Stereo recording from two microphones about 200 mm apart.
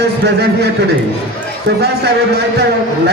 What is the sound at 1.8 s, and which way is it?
Speech, 55° right (ahead or behind).